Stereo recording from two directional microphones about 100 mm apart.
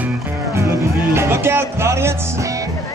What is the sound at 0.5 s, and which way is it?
Music, 25° right (ahead or behind).